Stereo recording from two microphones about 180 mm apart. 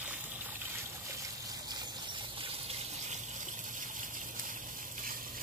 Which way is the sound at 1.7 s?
25° right (ahead or behind).